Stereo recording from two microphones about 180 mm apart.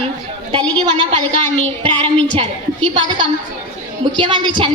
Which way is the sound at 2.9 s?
25° right (ahead or behind).